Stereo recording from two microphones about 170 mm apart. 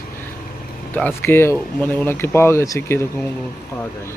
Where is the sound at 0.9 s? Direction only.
10° left (ahead or behind).